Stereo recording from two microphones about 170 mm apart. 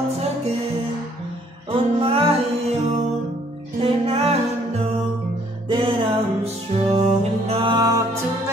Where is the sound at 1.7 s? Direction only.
35° right (ahead or behind).